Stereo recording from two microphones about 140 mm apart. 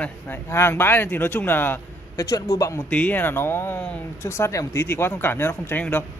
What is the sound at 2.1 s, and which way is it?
Speech, 25° left (ahead or behind).